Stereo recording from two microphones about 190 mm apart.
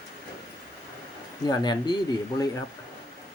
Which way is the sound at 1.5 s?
20° left (ahead or behind).